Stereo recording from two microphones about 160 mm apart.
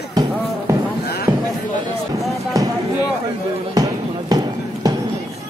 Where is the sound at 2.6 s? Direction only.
25° right (ahead or behind).